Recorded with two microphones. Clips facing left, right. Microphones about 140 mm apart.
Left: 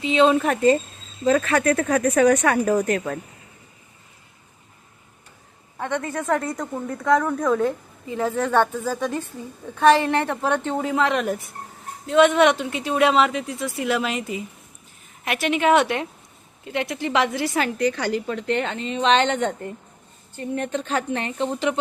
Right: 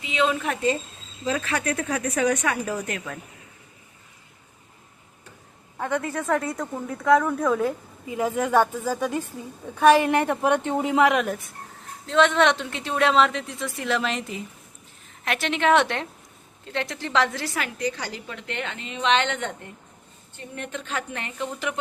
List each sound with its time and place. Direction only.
0.0 s a woman's voice: 30° left (ahead or behind)
5.7 s a woman's voice: centre (ahead or behind)
11.1 s speech: centre (ahead or behind)
12.0 s speech: 10° left (ahead or behind)
17.7 s a woman's voice: 65° left (ahead or behind)
18.3 s a woman's voice: 40° left (ahead or behind)
20.6 s a woman's voice: 35° left (ahead or behind)